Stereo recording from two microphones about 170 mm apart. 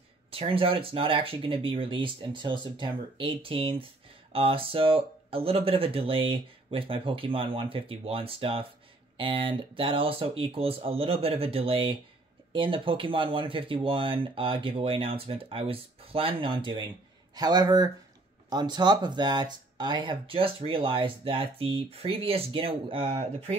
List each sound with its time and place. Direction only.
0.3 s speech: 35° right (ahead or behind)